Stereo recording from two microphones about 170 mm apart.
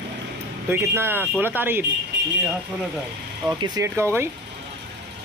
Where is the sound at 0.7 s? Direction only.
15° right (ahead or behind).